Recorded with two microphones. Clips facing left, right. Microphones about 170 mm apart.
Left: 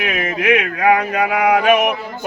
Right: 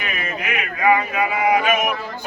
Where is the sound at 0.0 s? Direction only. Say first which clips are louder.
Left 8 dB; 90° left; by 1.9 s 70° left (ahead or behind).